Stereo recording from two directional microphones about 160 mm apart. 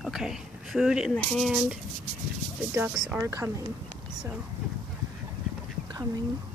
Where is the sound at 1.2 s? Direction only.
Centre (ahead or behind).